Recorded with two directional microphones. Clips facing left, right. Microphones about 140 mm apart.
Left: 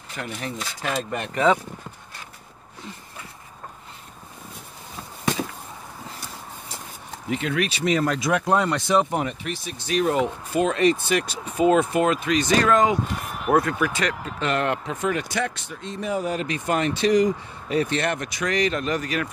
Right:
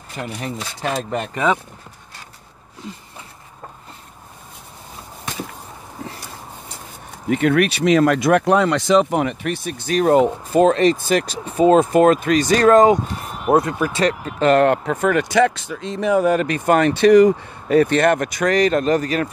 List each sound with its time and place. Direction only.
0.2 s speech: 30° right (ahead or behind)
7.2 s speech: 55° right (ahead or behind); by 8.2 s 90° right
8.2 s speech: 60° right (ahead or behind); by 12.9 s 40° right (ahead or behind)
13.5 s speech: 25° right (ahead or behind)